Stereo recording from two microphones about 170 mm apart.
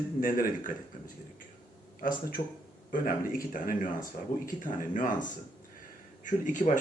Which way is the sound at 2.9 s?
55° left (ahead or behind).